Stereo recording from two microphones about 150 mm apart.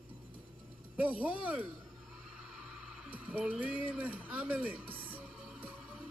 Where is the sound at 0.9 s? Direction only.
10° right (ahead or behind).